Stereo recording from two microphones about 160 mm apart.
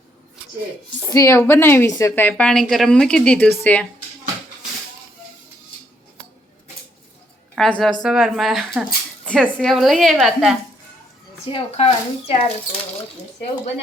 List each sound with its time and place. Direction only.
1.0 s a woman's voice: 20° left (ahead or behind)
7.5 s a woman's voice: centre (ahead or behind)
11.5 s speech: 35° left (ahead or behind)